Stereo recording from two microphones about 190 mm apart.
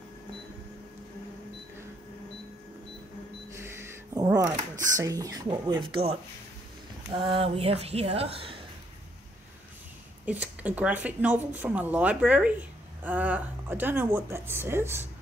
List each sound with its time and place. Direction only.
3.5 s a sound: 15° right (ahead or behind)
7.1 s speech: 25° right (ahead or behind)
10.2 s speech: 10° right (ahead or behind)